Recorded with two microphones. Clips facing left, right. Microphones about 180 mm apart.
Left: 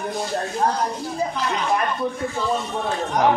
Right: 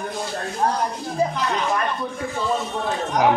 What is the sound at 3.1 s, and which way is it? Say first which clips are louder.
Speech: even; 5° right (ahead or behind).